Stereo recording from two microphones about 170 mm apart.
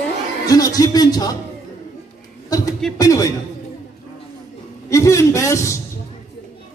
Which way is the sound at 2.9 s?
20° left (ahead or behind).